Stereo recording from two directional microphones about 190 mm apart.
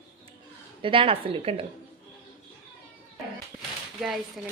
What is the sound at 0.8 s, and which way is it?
Speech, 25° right (ahead or behind).